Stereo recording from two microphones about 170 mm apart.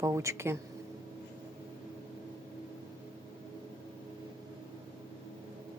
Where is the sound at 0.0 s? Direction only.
20° right (ahead or behind).